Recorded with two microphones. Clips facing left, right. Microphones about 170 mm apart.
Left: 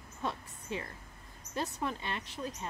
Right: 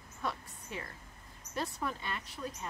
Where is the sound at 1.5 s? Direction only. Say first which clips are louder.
Left 1 dB; 25° left (ahead or behind).